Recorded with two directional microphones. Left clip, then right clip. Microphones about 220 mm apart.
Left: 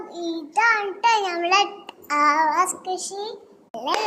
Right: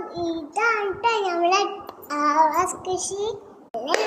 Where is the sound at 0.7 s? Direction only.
30° left (ahead or behind).